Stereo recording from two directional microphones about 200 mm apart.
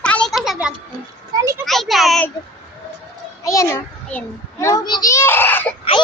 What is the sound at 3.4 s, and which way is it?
Child singing, 15° left (ahead or behind).